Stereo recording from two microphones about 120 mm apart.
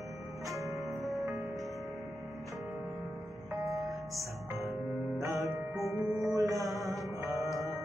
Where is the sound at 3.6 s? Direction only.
25° right (ahead or behind).